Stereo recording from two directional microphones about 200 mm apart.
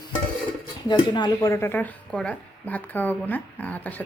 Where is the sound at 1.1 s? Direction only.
20° left (ahead or behind).